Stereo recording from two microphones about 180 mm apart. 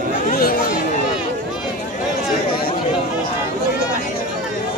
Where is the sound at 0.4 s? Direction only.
55° left (ahead or behind).